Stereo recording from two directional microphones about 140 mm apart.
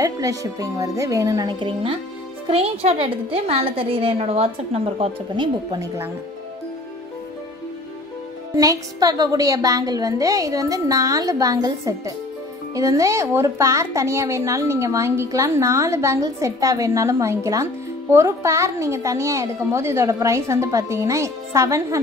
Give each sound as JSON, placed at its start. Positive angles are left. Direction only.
{"t": 0.0, "sound": "a woman's voice", "side_deg": -25}
{"t": 8.5, "sound": "a woman's voice", "side_deg": -25}